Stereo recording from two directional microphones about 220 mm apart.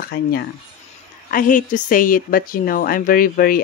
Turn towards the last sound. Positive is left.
turn(degrees=40)  # may be behind; listen again after turning